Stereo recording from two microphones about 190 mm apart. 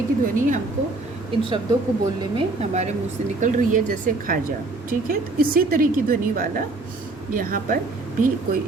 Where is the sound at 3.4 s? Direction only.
40° right (ahead or behind).